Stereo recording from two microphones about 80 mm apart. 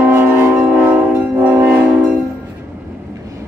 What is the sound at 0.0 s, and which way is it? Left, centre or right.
Music, right.